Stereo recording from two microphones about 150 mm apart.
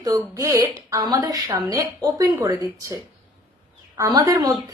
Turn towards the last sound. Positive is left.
turn(degrees=-25)  # may be behind; listen again after turning